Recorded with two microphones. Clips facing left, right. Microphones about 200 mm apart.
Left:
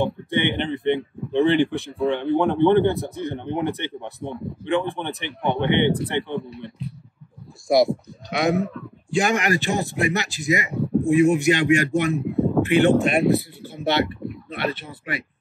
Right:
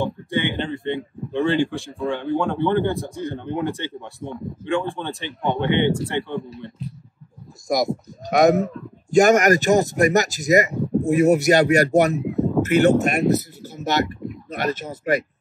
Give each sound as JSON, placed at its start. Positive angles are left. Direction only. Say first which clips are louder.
{"t": 0.0, "sound": "speech", "louder": "left 1 dB", "side_deg": 20}
{"t": 7.6, "sound": "speech", "louder": "left 4 dB", "side_deg": -40}